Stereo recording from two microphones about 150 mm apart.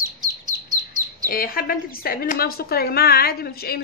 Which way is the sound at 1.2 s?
75° left (ahead or behind).